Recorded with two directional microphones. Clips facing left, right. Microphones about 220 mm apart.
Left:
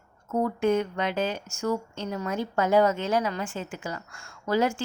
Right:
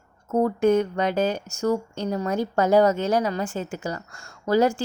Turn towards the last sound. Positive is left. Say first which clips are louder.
# right 5 dB
turn(degrees=-40)  # may be behind; listen again after turning